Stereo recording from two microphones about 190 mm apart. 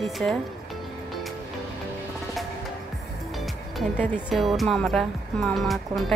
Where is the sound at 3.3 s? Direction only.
Centre (ahead or behind).